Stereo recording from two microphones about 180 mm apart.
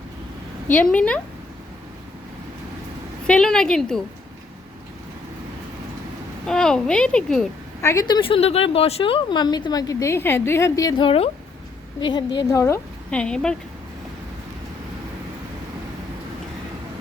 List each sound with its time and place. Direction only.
0.7 s a woman's voice: 10° left (ahead or behind)
3.2 s a child's voice: 5° left (ahead or behind)
6.4 s a child's voice: 5° left (ahead or behind)
7.8 s a woman's voice: 15° left (ahead or behind)